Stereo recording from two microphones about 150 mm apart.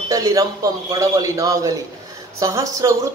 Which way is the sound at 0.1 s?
25° right (ahead or behind).